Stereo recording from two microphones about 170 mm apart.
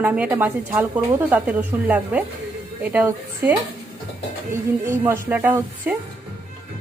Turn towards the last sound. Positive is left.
turn(degrees=-10)  # may be behind; listen again after turning